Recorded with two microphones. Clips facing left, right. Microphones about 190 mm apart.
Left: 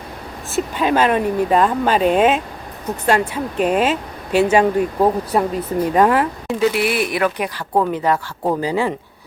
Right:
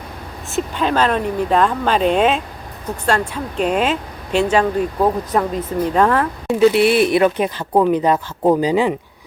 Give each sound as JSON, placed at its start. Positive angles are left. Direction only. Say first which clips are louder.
{"t": 0.5, "sound": "speech", "louder": "left 1 dB", "side_deg": 10}
{"t": 6.6, "sound": "speech", "louder": "right 6 dB", "side_deg": -25}